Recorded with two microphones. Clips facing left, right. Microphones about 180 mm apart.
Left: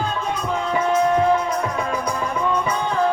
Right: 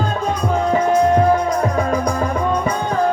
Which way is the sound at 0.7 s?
40° right (ahead or behind).